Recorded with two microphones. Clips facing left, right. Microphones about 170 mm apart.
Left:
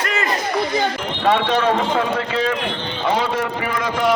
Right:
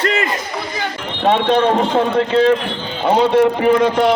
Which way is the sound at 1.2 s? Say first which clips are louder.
Right 4 dB; 30° right (ahead or behind).